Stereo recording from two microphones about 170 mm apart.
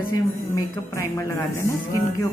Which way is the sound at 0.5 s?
20° left (ahead or behind).